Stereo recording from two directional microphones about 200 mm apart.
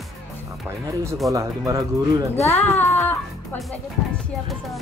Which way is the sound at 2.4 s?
10° left (ahead or behind).